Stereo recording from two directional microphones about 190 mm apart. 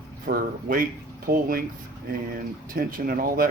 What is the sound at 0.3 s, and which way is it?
Speech, 50° right (ahead or behind).